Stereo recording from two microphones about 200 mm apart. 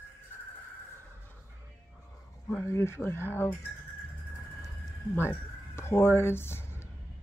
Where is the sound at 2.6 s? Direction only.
10° left (ahead or behind).